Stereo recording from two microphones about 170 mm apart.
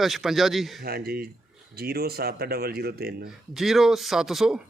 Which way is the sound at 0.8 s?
65° right (ahead or behind).